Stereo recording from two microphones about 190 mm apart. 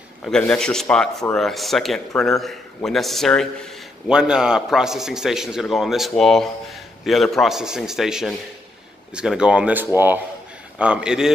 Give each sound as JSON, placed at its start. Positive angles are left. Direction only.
{"t": 0.2, "sound": "a man's voice", "side_deg": 5}